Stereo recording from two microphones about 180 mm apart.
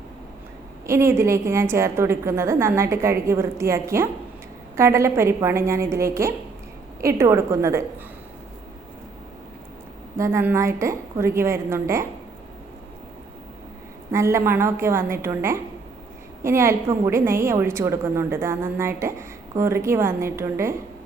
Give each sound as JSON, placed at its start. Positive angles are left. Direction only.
{"t": 0.9, "sound": "a woman's voice", "side_deg": -15}
{"t": 10.2, "sound": "a woman's voice", "side_deg": -15}
{"t": 14.1, "sound": "a woman's voice", "side_deg": -15}